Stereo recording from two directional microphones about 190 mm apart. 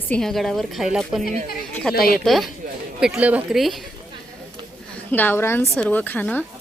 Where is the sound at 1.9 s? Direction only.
50° left (ahead or behind).